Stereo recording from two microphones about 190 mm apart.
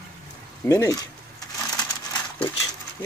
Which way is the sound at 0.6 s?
15° left (ahead or behind).